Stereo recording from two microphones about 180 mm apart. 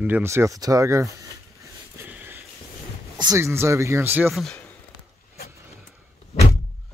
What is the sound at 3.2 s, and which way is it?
Speech, 20° right (ahead or behind).